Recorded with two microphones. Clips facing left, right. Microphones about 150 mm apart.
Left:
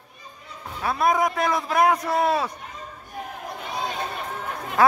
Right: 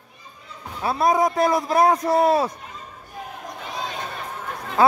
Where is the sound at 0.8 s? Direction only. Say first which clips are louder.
Right 2 dB; 30° right (ahead or behind).